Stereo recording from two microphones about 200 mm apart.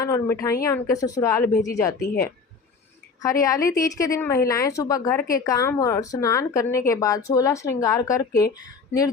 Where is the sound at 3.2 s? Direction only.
15° left (ahead or behind).